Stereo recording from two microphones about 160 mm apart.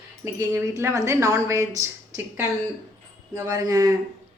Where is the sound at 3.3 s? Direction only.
20° right (ahead or behind).